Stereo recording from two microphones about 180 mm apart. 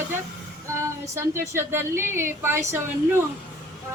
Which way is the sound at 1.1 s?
15° right (ahead or behind).